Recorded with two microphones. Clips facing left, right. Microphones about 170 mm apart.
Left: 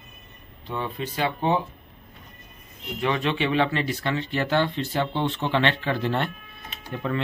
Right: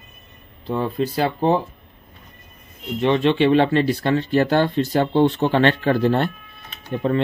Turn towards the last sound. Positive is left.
turn(degrees=-30)  # may be behind; listen again after turning